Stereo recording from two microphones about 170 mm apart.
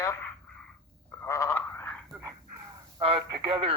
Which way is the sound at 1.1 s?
15° left (ahead or behind).